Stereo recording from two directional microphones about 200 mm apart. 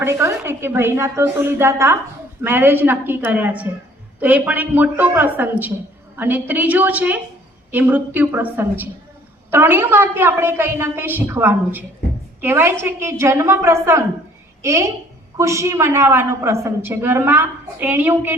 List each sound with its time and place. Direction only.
0.0 s a woman's voice: 15° right (ahead or behind)